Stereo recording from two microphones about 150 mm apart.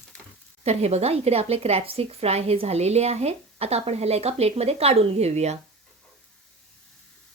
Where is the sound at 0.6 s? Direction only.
45° right (ahead or behind).